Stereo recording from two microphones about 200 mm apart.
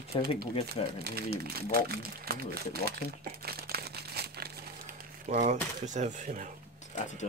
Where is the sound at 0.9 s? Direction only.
50° right (ahead or behind).